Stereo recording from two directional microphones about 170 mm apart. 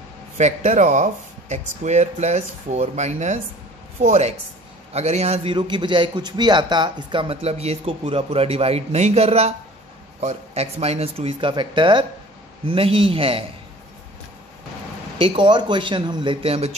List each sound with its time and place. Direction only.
0.4 s a man's voice: 45° right (ahead or behind)
15.1 s speech: 30° right (ahead or behind)